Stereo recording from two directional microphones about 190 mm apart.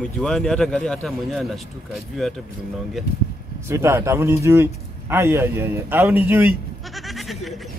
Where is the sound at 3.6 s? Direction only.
15° right (ahead or behind).